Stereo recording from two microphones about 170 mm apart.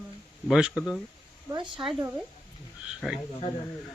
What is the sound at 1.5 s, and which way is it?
Speech, 30° right (ahead or behind).